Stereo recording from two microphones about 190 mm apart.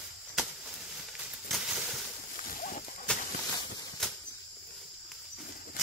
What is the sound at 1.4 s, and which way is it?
Crushing, centre (ahead or behind).